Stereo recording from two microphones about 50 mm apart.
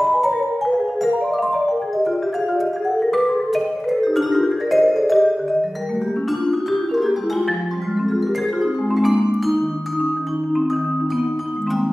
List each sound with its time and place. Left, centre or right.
0.0 s music: centre
2.5 s music: centre
8.9 s music: centre